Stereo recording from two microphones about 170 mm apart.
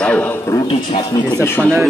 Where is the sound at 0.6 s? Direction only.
30° left (ahead or behind).